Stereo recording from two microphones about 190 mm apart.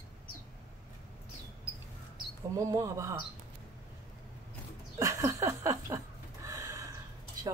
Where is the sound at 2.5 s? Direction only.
15° right (ahead or behind).